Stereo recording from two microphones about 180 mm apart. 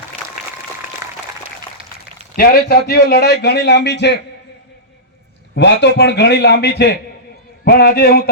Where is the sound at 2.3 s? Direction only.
55° left (ahead or behind); by 4.2 s 70° left (ahead or behind).